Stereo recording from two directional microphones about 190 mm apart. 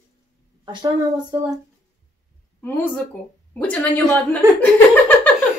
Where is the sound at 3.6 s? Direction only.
10° left (ahead or behind).